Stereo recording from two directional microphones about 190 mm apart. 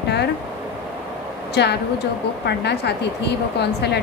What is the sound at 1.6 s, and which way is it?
A woman's voice, 60° left (ahead or behind).